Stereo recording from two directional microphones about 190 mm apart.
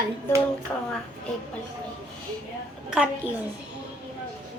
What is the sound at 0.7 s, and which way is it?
Speech, 10° left (ahead or behind).